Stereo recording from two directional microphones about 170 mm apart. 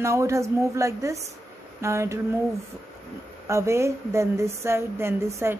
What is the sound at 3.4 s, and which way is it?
Speech, 15° right (ahead or behind).